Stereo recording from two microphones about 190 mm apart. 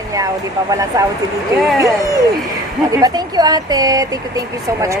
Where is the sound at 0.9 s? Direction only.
20° right (ahead or behind).